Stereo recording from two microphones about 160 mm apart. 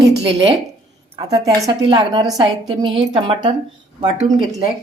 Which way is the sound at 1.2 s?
25° right (ahead or behind).